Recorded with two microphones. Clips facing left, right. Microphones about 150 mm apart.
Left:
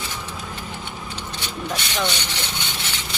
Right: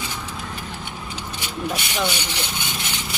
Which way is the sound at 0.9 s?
10° right (ahead or behind).